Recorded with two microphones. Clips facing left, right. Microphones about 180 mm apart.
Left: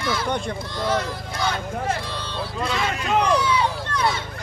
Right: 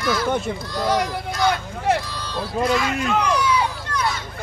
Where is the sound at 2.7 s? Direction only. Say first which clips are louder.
Right 1 dB; 30° left (ahead or behind).